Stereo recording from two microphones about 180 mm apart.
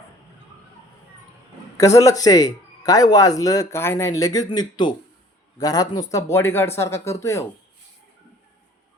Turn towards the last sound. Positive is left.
turn(degrees=15)  # may be behind; listen again after turning